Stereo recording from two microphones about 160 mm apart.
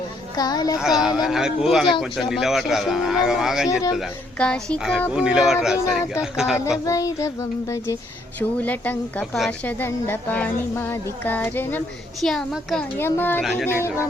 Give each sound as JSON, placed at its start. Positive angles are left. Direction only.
{"t": 0.3, "sound": "a child's voice", "side_deg": 25}
{"t": 0.8, "sound": "speech", "side_deg": -5}
{"t": 6.7, "sound": "a child's voice", "side_deg": 20}
{"t": 13.0, "sound": "a woman's voice", "side_deg": 15}